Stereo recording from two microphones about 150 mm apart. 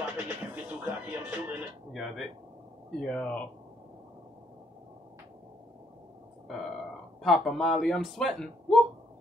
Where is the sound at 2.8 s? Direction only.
5° left (ahead or behind).